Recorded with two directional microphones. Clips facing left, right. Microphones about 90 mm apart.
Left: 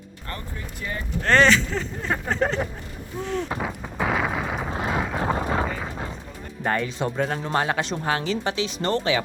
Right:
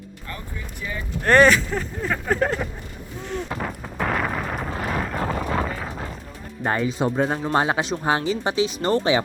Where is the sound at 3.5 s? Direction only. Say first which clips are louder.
Even; 5° left (ahead or behind).